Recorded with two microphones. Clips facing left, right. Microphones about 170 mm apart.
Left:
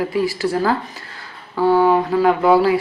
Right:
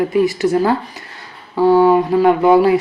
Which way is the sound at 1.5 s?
15° right (ahead or behind).